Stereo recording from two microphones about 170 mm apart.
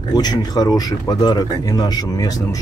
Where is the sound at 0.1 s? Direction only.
25° left (ahead or behind).